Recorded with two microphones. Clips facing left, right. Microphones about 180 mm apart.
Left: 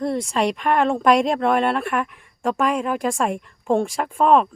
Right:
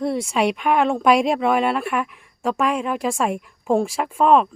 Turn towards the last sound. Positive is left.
turn(degrees=0)  # may be behind; listen again after turning